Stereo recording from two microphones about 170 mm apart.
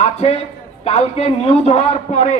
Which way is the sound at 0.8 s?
40° left (ahead or behind).